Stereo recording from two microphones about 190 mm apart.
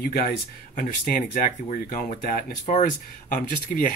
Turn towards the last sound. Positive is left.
turn(degrees=45)  # may be behind; listen again after turning